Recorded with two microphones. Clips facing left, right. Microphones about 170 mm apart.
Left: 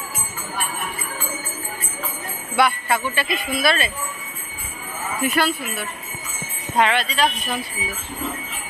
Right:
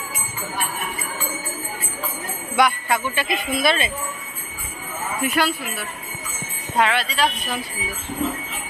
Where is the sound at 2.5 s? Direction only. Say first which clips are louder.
Even; 15° right (ahead or behind).